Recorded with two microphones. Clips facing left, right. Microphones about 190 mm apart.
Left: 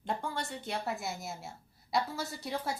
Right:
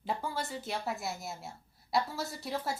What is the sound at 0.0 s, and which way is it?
A woman's voice, 5° right (ahead or behind).